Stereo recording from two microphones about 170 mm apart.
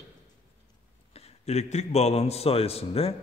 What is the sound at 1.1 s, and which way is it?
A man's voice, 40° left (ahead or behind).